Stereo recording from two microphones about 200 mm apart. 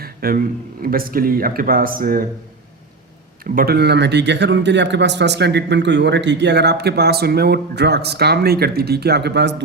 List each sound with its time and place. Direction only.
0.0 s a sound: 50° right (ahead or behind)
0.8 s speech: 45° right (ahead or behind)
3.4 s speech: 45° right (ahead or behind)